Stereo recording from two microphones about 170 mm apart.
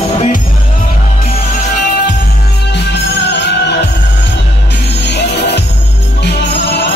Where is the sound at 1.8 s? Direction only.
55° left (ahead or behind).